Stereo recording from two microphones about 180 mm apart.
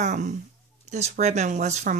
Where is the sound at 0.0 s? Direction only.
40° right (ahead or behind).